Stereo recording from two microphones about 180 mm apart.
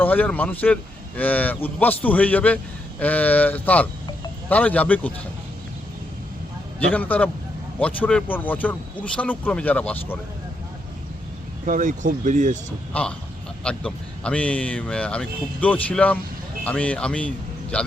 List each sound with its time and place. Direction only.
0.0 s a man's voice: 10° left (ahead or behind)
6.7 s a man's voice: 10° left (ahead or behind)
11.6 s speech: 45° right (ahead or behind)
12.9 s a man's voice: 5° left (ahead or behind)